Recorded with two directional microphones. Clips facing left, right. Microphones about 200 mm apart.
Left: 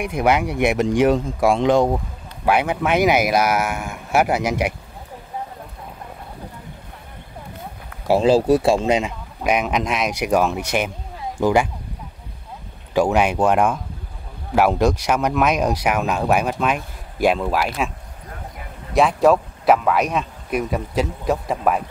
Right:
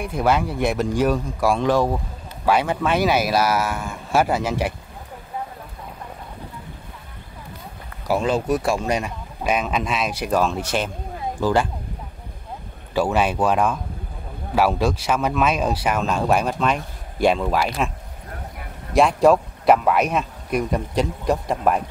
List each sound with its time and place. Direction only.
0.0 s speech: 15° left (ahead or behind)
8.1 s speech: 30° left (ahead or behind); by 11.7 s 10° left (ahead or behind)
12.9 s speech: 15° left (ahead or behind)
18.9 s speech: centre (ahead or behind)